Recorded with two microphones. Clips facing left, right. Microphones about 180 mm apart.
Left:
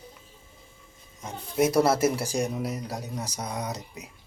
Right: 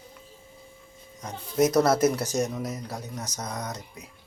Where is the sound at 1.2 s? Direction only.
10° left (ahead or behind).